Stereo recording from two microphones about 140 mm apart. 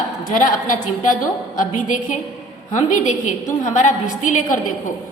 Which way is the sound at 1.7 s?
65° left (ahead or behind).